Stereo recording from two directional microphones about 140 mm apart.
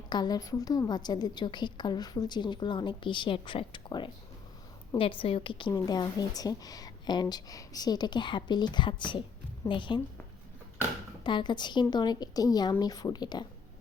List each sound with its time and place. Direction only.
0.1 s a woman's voice: 30° left (ahead or behind)
11.2 s a woman's voice: 35° left (ahead or behind)